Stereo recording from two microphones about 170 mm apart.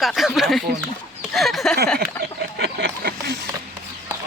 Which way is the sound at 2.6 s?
80° right.